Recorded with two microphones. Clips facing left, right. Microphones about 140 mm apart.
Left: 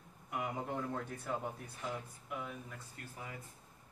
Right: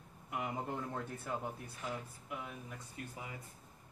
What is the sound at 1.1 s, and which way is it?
A man's voice, 5° right (ahead or behind).